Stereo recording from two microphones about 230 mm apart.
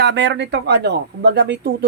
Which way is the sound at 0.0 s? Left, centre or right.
Right.